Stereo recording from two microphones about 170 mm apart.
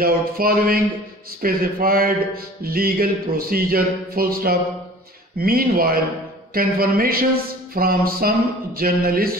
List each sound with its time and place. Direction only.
0.0 s speech: 60° right (ahead or behind)